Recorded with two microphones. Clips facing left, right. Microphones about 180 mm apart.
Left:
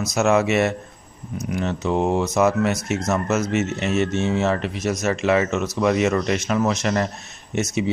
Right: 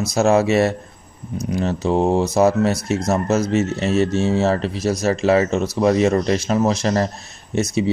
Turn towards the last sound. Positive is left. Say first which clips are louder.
# right 3 dB
turn(degrees=-35)  # may be behind; listen again after turning